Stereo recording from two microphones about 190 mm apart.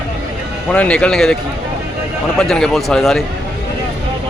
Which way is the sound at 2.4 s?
5° left (ahead or behind).